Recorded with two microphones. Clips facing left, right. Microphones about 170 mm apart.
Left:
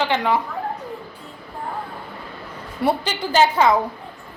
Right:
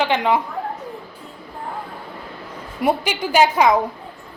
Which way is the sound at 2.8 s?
15° right (ahead or behind).